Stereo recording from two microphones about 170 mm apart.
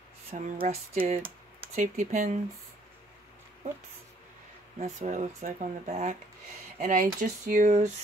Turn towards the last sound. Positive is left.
turn(degrees=-45)  # may be behind; listen again after turning